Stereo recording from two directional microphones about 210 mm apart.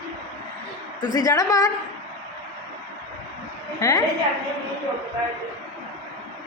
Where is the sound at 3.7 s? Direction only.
15° left (ahead or behind).